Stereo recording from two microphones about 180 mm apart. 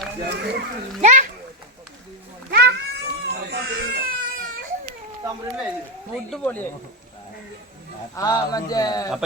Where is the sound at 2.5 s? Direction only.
65° right (ahead or behind).